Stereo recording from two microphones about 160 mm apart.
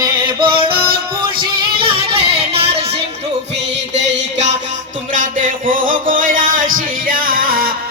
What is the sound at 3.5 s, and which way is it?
Music, 90° right.